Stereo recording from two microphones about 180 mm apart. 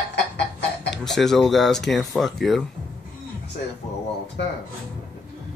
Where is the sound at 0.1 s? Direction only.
75° left (ahead or behind).